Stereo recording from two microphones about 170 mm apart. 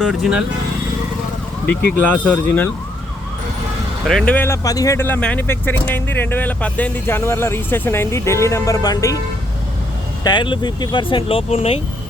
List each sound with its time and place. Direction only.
0.0 s speech: 5° right (ahead or behind)
2.1 s speech: 10° left (ahead or behind)
4.0 s speech: centre (ahead or behind); by 9.2 s 20° left (ahead or behind)
10.2 s speech: 25° left (ahead or behind)